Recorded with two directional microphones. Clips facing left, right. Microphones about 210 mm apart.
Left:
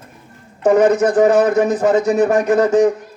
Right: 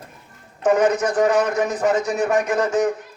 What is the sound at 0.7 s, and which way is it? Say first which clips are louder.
Speech: left 6 dB; 35° left (ahead or behind).